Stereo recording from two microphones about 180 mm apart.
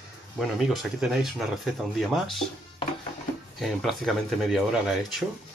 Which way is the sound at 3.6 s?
Centre (ahead or behind).